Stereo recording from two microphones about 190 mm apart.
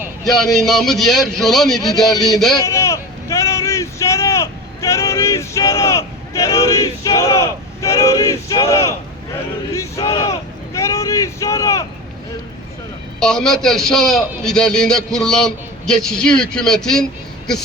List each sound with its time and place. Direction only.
0.4 s a man's voice: centre (ahead or behind)
1.8 s speech: 20° left (ahead or behind)
2.6 s vehicle: 15° left (ahead or behind)
9.7 s battle cry: 15° left (ahead or behind)
10.8 s vehicle: 15° left (ahead or behind)
13.1 s a man's voice: 5° left (ahead or behind)